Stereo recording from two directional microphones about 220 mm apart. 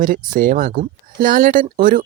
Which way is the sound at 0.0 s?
40° right (ahead or behind).